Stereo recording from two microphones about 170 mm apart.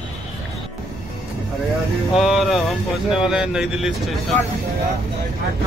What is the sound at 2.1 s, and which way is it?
Speech, centre (ahead or behind).